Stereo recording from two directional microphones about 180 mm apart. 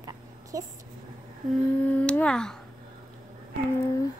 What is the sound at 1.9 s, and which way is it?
Speech, 5° left (ahead or behind).